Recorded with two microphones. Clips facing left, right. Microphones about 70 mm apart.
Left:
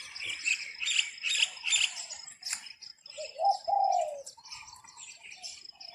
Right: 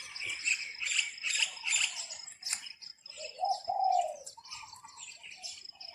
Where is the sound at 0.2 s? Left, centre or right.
Right.